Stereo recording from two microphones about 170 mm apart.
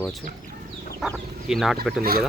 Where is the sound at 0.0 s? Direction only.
Centre (ahead or behind).